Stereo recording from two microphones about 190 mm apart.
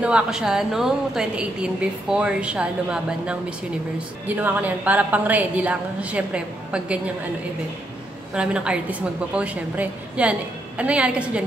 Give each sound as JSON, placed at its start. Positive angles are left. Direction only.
{"t": 0.0, "sound": "a woman's voice", "side_deg": -5}
{"t": 8.4, "sound": "a woman's voice", "side_deg": -5}